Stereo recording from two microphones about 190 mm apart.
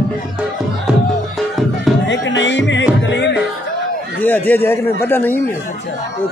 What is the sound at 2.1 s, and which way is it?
Music, 75° left (ahead or behind).